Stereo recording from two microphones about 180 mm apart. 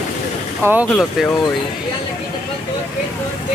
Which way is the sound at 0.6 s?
10° right (ahead or behind).